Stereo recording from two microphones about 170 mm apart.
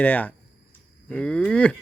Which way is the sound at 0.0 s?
10° left (ahead or behind).